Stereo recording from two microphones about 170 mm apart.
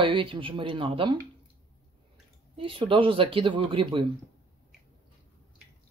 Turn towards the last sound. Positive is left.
turn(degrees=-30)  # may be behind; listen again after turning